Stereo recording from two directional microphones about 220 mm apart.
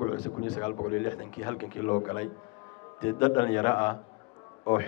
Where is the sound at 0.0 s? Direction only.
20° left (ahead or behind).